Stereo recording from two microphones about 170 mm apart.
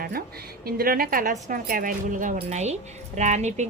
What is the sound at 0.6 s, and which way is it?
A woman's voice, 60° right (ahead or behind).